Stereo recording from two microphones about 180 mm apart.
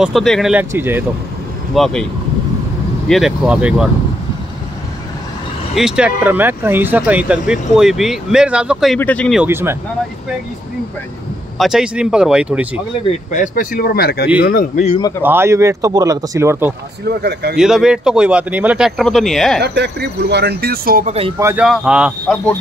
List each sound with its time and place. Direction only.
0.0 s speech: centre (ahead or behind)
1.8 s speech: 5° left (ahead or behind)
3.1 s speech: centre (ahead or behind)
5.8 s speech: 5° right (ahead or behind)
9.4 s speech: 15° right (ahead or behind)
11.5 s speech: centre (ahead or behind)
13.3 s speech: 45° left (ahead or behind)
15.2 s speech: 15° right (ahead or behind)
17.2 s speech: 65° right (ahead or behind)
17.6 s speech: 5° right (ahead or behind)
19.6 s speech: 65° right (ahead or behind)
21.4 s speech: 15° right (ahead or behind)
21.6 s speech: 5° right (ahead or behind)